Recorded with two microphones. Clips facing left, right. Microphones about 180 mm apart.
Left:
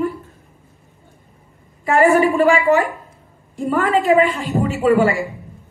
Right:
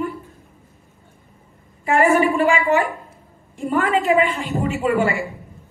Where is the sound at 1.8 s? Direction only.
35° left (ahead or behind).